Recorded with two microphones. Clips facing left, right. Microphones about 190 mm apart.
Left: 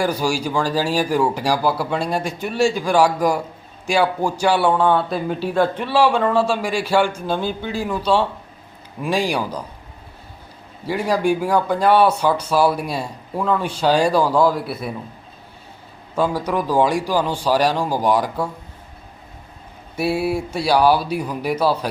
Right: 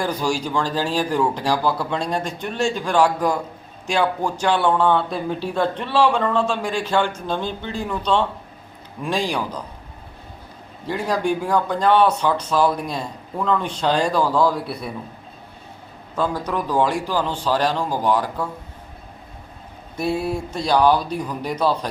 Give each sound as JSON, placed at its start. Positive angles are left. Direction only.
{"t": 0.0, "sound": "a man's voice", "side_deg": 10}
{"t": 10.8, "sound": "a man's voice", "side_deg": 10}
{"t": 16.1, "sound": "a man's voice", "side_deg": 10}
{"t": 20.0, "sound": "a man's voice", "side_deg": 10}